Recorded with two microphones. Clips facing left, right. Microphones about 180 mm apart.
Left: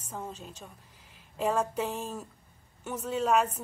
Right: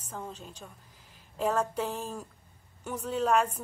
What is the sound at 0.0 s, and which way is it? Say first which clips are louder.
A woman's voice: left 1 dB; 10° left (ahead or behind).